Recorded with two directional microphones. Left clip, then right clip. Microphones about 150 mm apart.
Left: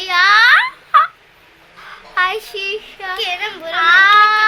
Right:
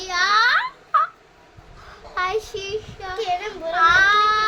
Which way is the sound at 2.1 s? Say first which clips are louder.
Left 6 dB; 5° left (ahead or behind).